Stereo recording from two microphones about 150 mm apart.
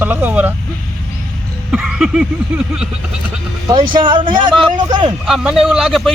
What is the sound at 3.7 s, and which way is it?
Speech, 30° right (ahead or behind).